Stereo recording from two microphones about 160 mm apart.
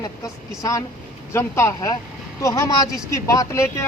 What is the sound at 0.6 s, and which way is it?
Speech, 20° left (ahead or behind).